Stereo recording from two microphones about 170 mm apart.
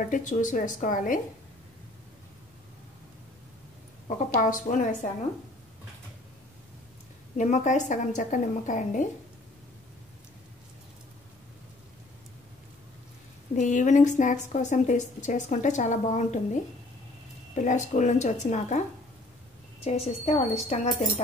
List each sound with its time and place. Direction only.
0.0 s a woman's voice: 50° left (ahead or behind)
4.4 s a woman's voice: 50° left (ahead or behind)
7.3 s a woman's voice: 45° left (ahead or behind)
13.6 s a woman's voice: 45° left (ahead or behind)
17.6 s a woman's voice: 45° left (ahead or behind)
19.8 s a woman's voice: 40° left (ahead or behind)